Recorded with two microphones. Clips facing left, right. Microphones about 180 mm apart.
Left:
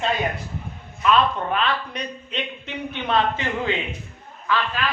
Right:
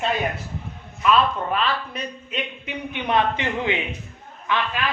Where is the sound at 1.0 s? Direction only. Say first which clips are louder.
Even; centre (ahead or behind); by 4.8 s 20° right (ahead or behind).